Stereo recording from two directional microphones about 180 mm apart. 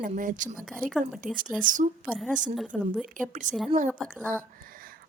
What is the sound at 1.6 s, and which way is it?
Speech, 45° right (ahead or behind).